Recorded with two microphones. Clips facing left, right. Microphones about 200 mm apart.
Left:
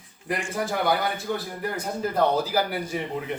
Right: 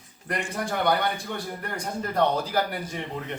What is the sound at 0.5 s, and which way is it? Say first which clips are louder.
A man's voice: even; 5° left (ahead or behind).